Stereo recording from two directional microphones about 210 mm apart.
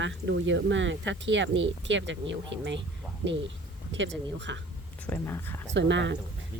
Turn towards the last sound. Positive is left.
turn(degrees=-60)  # may be behind; listen again after turning